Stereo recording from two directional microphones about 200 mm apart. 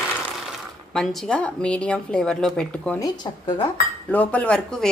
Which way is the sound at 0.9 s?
Centre (ahead or behind).